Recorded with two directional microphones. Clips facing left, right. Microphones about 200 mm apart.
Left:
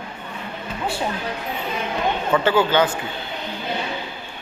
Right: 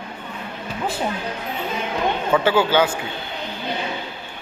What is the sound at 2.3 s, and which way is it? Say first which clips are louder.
Speech: even; 10° right (ahead or behind).